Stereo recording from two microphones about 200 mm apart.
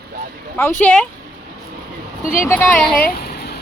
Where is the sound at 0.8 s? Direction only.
5° left (ahead or behind).